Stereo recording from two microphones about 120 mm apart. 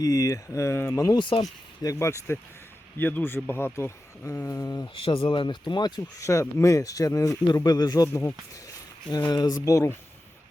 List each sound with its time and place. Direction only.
0.0 s speech: 30° left (ahead or behind)
4.9 s speech: 50° left (ahead or behind)
6.1 s speech: 25° left (ahead or behind)